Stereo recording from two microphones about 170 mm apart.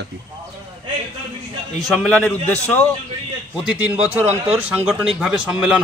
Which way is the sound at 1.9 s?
5° left (ahead or behind).